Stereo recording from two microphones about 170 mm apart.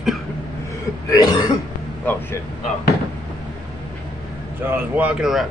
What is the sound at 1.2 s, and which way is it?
Throat clearing, 25° left (ahead or behind).